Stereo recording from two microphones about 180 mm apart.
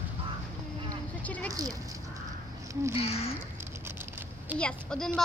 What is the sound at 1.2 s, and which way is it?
Speech, 10° left (ahead or behind).